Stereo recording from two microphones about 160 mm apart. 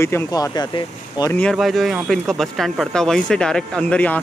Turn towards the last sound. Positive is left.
turn(degrees=10)  # may be behind; listen again after turning